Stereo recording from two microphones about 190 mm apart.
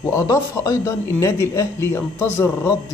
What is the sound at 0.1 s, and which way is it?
Speech, 15° left (ahead or behind).